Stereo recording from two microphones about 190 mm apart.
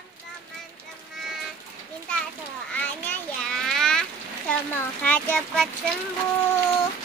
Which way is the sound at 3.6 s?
Centre (ahead or behind).